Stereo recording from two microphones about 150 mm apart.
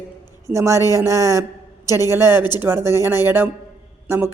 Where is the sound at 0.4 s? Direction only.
20° right (ahead or behind).